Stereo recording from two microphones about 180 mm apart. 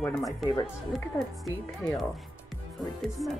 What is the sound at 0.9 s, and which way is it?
Speech, 5° left (ahead or behind).